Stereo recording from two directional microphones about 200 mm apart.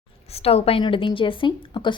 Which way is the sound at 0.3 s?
30° left (ahead or behind).